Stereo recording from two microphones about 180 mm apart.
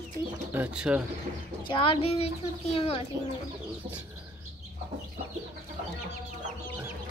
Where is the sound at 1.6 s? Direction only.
30° left (ahead or behind).